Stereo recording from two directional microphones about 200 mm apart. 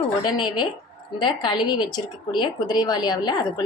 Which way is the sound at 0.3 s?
20° left (ahead or behind).